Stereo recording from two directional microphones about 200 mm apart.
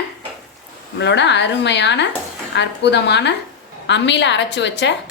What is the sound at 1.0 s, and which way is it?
A woman's voice, 60° left (ahead or behind).